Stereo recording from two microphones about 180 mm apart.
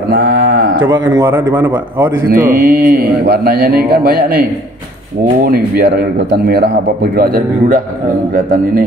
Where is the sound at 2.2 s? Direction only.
50° right (ahead or behind).